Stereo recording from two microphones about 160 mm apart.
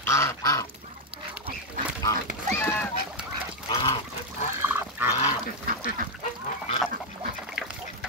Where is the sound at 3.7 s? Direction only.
30° left (ahead or behind).